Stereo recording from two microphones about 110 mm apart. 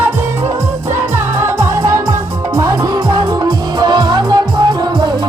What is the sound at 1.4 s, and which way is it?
Music, 25° right (ahead or behind).